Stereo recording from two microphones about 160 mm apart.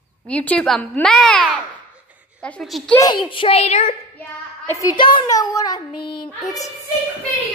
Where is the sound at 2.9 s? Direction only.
25° left (ahead or behind).